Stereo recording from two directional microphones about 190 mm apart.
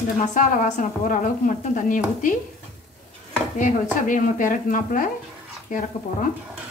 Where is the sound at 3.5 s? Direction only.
40° left (ahead or behind).